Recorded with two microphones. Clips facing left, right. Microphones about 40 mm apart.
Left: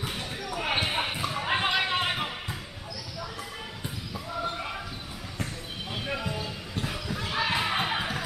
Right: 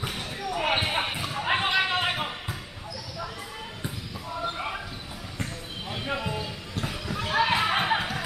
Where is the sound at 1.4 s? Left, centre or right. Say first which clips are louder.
Right 3 dB; centre.